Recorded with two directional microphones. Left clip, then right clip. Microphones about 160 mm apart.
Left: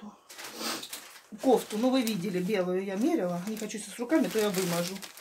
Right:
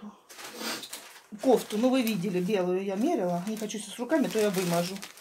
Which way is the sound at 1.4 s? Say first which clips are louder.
Right 1 dB; 30° right (ahead or behind).